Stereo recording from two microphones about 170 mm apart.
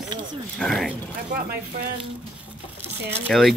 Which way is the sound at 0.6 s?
Centre (ahead or behind).